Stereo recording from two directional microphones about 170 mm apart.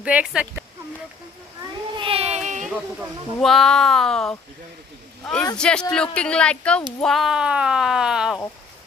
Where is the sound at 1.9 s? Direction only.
35° right (ahead or behind).